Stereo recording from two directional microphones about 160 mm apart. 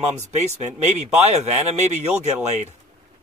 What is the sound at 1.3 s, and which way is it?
Speech, 45° right (ahead or behind).